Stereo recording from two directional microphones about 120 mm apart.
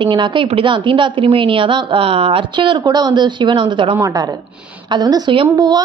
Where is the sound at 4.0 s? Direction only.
30° right (ahead or behind).